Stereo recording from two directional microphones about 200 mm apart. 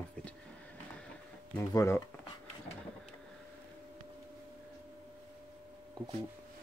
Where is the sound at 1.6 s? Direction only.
15° left (ahead or behind).